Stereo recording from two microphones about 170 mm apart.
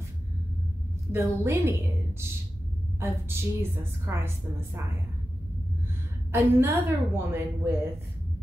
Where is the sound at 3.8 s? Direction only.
15° right (ahead or behind).